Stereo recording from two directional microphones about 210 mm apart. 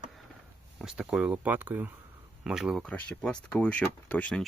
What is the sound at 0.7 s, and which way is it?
Speech, 5° right (ahead or behind).